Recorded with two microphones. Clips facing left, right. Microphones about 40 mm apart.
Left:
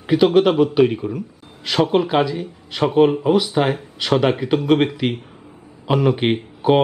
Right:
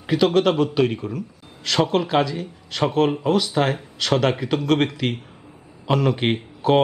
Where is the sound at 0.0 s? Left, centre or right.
Centre.